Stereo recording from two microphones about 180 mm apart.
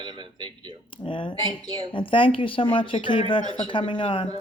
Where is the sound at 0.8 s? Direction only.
25° left (ahead or behind).